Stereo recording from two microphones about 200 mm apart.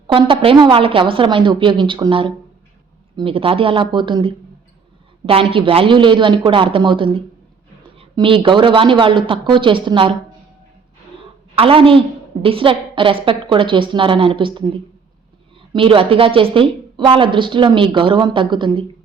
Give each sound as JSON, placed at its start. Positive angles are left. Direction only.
{"t": 0.1, "sound": "a woman's voice", "side_deg": -25}
{"t": 11.5, "sound": "a woman's voice", "side_deg": -25}
{"t": 15.7, "sound": "a woman's voice", "side_deg": -25}